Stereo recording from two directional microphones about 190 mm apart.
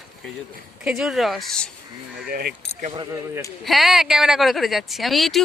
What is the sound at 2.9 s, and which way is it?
Speech, 20° right (ahead or behind).